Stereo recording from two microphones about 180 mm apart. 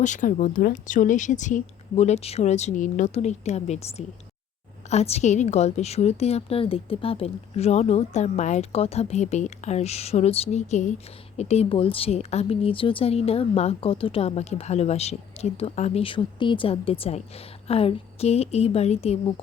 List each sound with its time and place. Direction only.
0.0 s speech: 45° left (ahead or behind)